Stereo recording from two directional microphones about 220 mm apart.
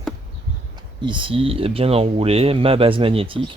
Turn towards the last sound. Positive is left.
turn(degrees=-25)  # may be behind; listen again after turning